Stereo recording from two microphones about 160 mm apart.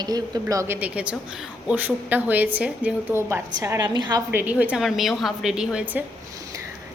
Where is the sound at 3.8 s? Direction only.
30° right (ahead or behind).